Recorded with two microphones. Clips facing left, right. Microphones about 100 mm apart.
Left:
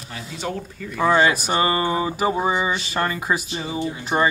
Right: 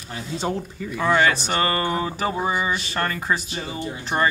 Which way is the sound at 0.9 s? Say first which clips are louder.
Left 2 dB; 15° left (ahead or behind).